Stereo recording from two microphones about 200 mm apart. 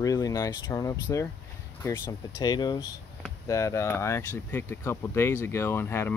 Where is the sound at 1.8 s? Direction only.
15° left (ahead or behind).